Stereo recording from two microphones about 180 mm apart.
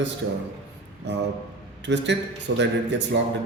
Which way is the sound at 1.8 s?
80° right.